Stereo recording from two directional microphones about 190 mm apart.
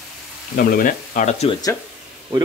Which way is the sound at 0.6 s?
50° left (ahead or behind).